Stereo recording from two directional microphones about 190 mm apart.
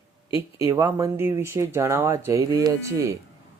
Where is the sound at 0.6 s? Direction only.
15° right (ahead or behind).